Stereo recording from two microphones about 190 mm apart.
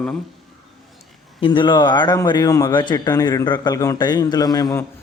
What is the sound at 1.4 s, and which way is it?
Speech, 25° left (ahead or behind).